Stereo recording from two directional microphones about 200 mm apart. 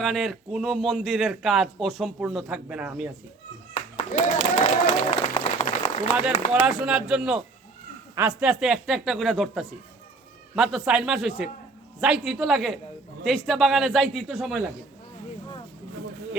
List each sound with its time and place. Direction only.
0.0 s speech: centre (ahead or behind)
3.9 s a sound: 30° left (ahead or behind)
5.1 s applause: 30° left (ahead or behind)
6.5 s speech: 5° right (ahead or behind)